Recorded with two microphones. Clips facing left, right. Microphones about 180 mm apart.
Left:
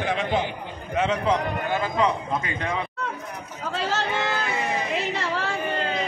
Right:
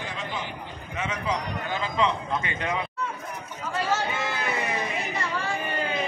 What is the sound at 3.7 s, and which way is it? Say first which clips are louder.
Chatter: left 1 dB; 70° left (ahead or behind).